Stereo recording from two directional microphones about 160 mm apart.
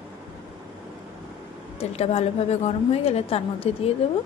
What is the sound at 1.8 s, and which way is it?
A woman's voice, 40° left (ahead or behind).